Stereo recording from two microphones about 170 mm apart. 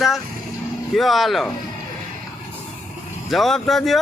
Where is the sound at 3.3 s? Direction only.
Centre (ahead or behind).